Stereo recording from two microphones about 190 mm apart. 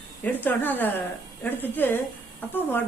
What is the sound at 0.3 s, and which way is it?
Speech, 10° left (ahead or behind).